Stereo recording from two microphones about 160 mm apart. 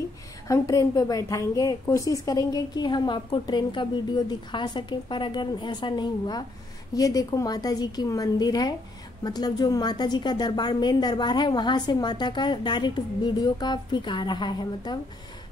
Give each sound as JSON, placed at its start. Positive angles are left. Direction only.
{"t": 0.5, "sound": "a woman's voice", "side_deg": 20}